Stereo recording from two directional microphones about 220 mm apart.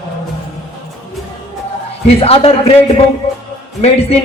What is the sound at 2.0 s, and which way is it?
Speech, 25° left (ahead or behind).